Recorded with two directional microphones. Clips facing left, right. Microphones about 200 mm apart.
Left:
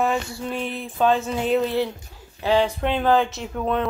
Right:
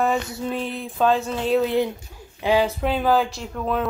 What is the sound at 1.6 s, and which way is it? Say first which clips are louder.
Speech: right 2 dB; 15° right (ahead or behind).